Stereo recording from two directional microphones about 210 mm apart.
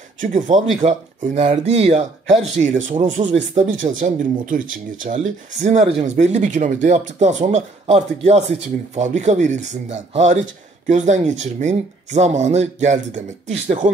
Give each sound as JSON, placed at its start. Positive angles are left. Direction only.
{"t": 0.2, "sound": "speech", "side_deg": -35}